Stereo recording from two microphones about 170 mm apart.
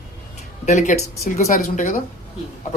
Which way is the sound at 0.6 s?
45° left (ahead or behind).